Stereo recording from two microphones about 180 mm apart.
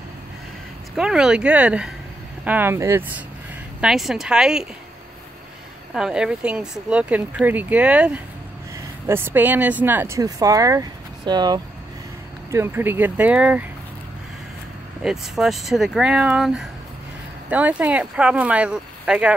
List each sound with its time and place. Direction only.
0.9 s speech: 5° right (ahead or behind)
5.9 s speech: 5° right (ahead or behind)
15.0 s speech: centre (ahead or behind)